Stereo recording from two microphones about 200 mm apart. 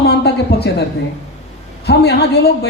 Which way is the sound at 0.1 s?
55° left (ahead or behind).